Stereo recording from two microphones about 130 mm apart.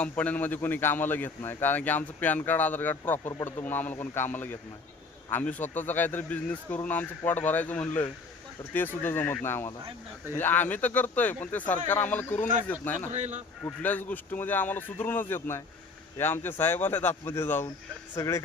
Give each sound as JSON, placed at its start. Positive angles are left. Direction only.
{"t": 0.0, "sound": "a man's voice", "side_deg": 10}
{"t": 13.1, "sound": "a man's voice", "side_deg": -60}
{"t": 13.7, "sound": "a man's voice", "side_deg": 15}